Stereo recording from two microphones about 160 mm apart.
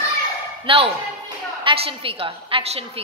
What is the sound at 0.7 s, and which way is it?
A woman's voice, 35° right (ahead or behind).